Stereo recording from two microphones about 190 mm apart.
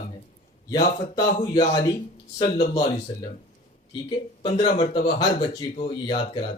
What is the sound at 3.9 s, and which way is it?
A man's voice, 25° left (ahead or behind).